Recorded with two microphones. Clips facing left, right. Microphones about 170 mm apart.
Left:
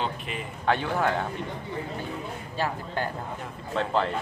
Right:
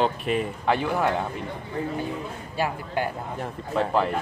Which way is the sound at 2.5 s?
10° right (ahead or behind).